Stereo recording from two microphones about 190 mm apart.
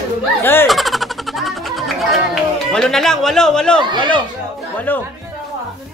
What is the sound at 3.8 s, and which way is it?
Speech, 25° right (ahead or behind).